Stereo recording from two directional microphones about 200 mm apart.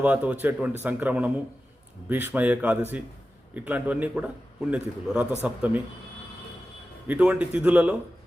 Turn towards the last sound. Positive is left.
turn(degrees=-5)  # may be behind; listen again after turning